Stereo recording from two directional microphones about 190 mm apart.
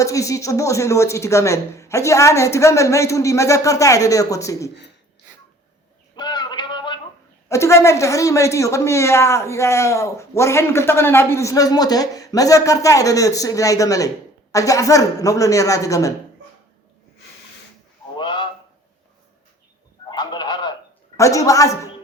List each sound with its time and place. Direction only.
0.0 s a man's voice: 15° left (ahead or behind)
6.1 s a sound: 25° left (ahead or behind)
7.4 s a man's voice: 15° left (ahead or behind)
18.2 s honk: 25° left (ahead or behind)
20.1 s a sound: 20° left (ahead or behind)
21.2 s a man's voice: 15° left (ahead or behind)